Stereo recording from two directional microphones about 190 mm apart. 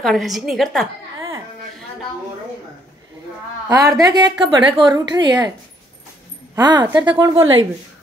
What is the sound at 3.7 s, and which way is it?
A woman's voice, 20° right (ahead or behind).